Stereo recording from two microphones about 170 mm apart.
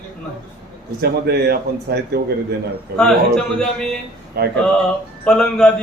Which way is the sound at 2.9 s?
5° left (ahead or behind).